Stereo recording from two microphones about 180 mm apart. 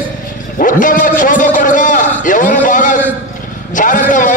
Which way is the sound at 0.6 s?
50° left (ahead or behind).